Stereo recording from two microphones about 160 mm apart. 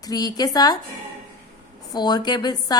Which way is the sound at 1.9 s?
25° left (ahead or behind).